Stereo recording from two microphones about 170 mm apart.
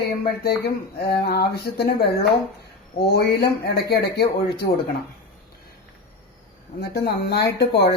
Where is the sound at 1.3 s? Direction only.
70° left (ahead or behind).